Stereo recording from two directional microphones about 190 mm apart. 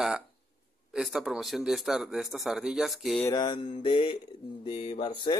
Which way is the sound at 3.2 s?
20° left (ahead or behind).